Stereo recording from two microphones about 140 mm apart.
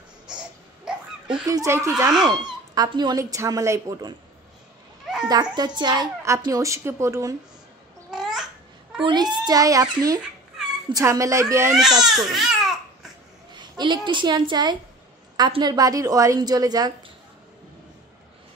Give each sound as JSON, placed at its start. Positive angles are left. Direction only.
{"t": 0.3, "sound": "a sound", "side_deg": -5}
{"t": 1.5, "sound": "a woman's voice", "side_deg": -20}
{"t": 5.3, "sound": "a woman's voice", "side_deg": -30}
{"t": 8.1, "sound": "babbling", "side_deg": -5}
{"t": 9.0, "sound": "a woman's voice", "side_deg": -30}
{"t": 12.3, "sound": "baby cry", "side_deg": 0}
{"t": 13.5, "sound": "a woman's voice", "side_deg": -35}